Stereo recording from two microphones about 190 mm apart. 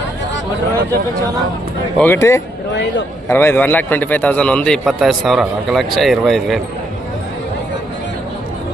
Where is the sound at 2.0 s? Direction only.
10° left (ahead or behind).